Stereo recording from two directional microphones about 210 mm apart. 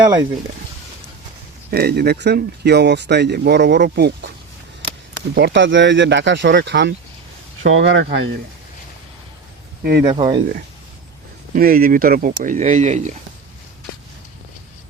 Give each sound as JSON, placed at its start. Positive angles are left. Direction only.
{"t": 1.7, "sound": "speech", "side_deg": -50}
{"t": 5.3, "sound": "speech", "side_deg": -55}
{"t": 10.0, "sound": "speech", "side_deg": -25}
{"t": 11.5, "sound": "speech", "side_deg": -40}